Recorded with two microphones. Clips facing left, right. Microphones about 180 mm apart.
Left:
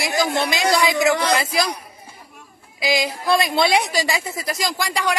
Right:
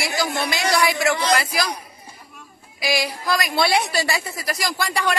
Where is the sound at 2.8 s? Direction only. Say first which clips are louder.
Left 2 dB; 20° left (ahead or behind).